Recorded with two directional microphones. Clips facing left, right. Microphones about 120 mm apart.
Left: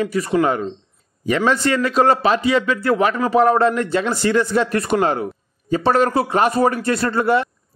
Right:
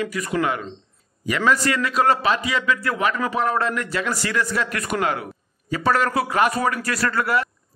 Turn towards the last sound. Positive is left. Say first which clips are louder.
# left 4 dB
turn(degrees=25)  # may be behind; listen again after turning